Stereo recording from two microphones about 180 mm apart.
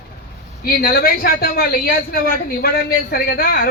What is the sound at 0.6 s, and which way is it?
A man's voice, 55° left (ahead or behind).